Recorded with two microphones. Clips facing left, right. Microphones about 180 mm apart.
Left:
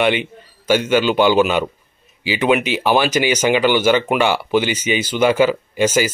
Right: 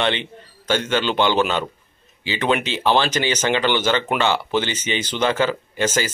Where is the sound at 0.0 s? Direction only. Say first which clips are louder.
Left 5 dB; 10° left (ahead or behind).